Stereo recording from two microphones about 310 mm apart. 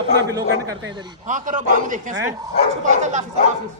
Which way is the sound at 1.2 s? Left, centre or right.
Right.